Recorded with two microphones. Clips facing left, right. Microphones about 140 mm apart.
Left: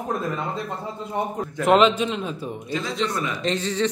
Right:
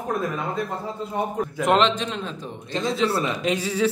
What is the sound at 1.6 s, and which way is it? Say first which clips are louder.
A man's voice: left 3 dB; 5° left (ahead or behind).